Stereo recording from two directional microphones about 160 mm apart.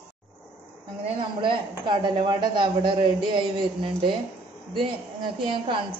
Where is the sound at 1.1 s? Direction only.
30° right (ahead or behind).